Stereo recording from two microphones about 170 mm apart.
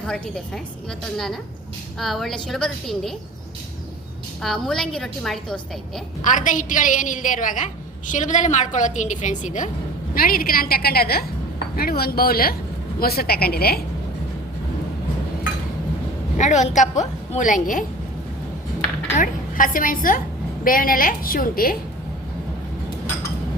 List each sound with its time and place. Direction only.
0.0 s a woman's voice: 5° left (ahead or behind)
4.4 s a woman's voice: centre (ahead or behind)
6.2 s a woman's voice: 50° left (ahead or behind)
10.2 s a woman's voice: 60° left (ahead or behind)
16.4 s a woman's voice: 45° left (ahead or behind)
19.1 s a woman's voice: 50° left (ahead or behind)